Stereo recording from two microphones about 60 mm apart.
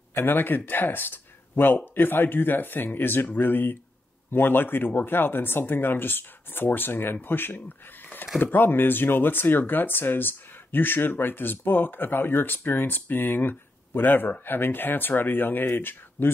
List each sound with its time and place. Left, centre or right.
0.1 s speech: left